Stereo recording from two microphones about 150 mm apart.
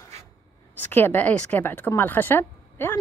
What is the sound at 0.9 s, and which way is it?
Speech, 15° left (ahead or behind).